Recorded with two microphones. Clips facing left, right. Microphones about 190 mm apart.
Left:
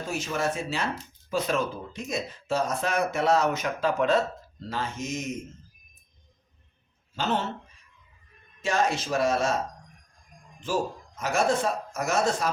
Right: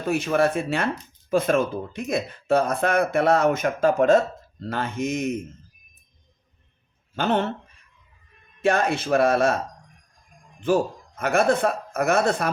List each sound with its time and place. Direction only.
0.0 s speech: 60° right (ahead or behind)
4.7 s speech: 60° right (ahead or behind)
7.2 s speech: 55° right (ahead or behind)
8.6 s speech: 60° right (ahead or behind)
10.6 s speech: 60° right (ahead or behind)